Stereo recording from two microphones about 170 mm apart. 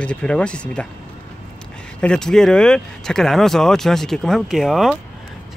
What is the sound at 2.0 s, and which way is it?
Speech, 5° left (ahead or behind).